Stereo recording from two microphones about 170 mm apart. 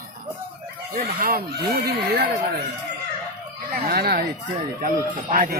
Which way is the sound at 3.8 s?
65° right (ahead or behind).